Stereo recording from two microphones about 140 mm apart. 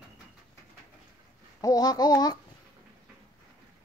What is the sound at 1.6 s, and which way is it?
Speech, 25° left (ahead or behind).